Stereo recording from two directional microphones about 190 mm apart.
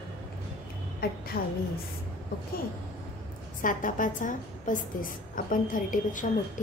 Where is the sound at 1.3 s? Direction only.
50° left (ahead or behind).